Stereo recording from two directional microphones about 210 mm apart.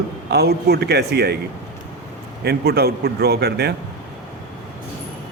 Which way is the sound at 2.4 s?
50° right (ahead or behind).